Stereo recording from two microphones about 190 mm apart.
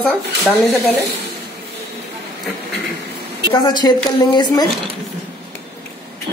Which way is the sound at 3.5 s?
20° left (ahead or behind).